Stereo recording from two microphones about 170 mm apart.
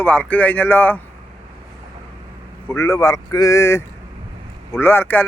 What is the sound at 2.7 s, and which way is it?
Speech, 15° left (ahead or behind).